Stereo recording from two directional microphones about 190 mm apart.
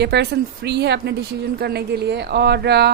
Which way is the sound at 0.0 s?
60° right (ahead or behind).